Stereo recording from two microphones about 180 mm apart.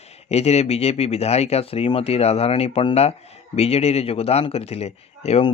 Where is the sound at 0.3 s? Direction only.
35° left (ahead or behind).